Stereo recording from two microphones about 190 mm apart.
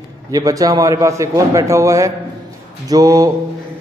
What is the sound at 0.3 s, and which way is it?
A man's voice, 20° right (ahead or behind).